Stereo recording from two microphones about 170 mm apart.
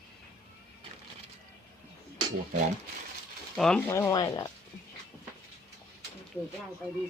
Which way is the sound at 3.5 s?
5° left (ahead or behind).